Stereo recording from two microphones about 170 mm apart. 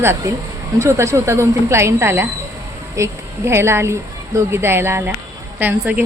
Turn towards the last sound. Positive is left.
turn(degrees=-10)  # may be behind; listen again after turning